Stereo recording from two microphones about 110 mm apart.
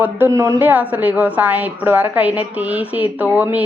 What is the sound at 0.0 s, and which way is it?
Speech, 20° right (ahead or behind).